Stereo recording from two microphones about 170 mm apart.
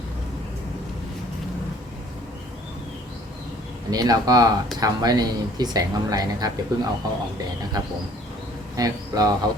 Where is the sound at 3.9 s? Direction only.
20° right (ahead or behind).